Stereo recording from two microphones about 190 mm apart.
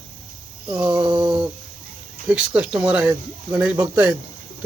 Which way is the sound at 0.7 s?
20° right (ahead or behind).